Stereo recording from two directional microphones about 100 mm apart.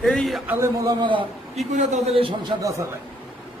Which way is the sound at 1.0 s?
60° right (ahead or behind).